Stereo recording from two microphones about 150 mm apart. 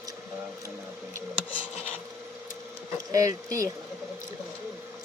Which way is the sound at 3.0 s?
20° right (ahead or behind).